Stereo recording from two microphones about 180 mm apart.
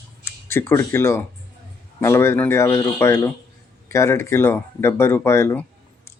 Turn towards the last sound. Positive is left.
turn(degrees=15)  # may be behind; listen again after turning